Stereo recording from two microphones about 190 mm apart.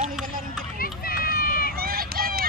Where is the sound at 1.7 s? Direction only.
50° right (ahead or behind).